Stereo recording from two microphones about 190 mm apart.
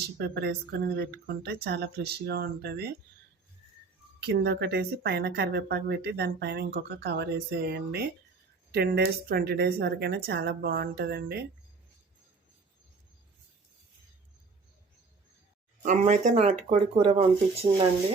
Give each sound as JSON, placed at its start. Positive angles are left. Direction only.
{"t": 0.2, "sound": "speech", "side_deg": -55}
{"t": 4.2, "sound": "speech", "side_deg": -60}
{"t": 15.8, "sound": "speech", "side_deg": -45}